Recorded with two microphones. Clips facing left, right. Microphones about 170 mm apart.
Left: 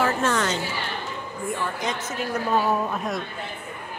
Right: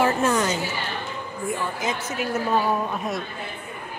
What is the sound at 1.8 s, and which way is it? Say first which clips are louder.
Speech: right 1 dB; 5° right (ahead or behind).